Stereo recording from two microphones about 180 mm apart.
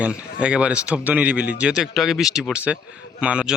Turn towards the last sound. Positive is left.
turn(degrees=-5)  # may be behind; listen again after turning